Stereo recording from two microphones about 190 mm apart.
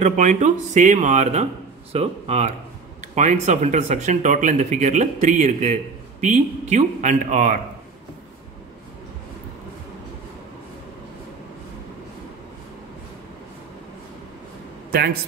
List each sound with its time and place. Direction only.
0.0 s speech: 40° right (ahead or behind)
14.9 s a man's voice: 55° right (ahead or behind)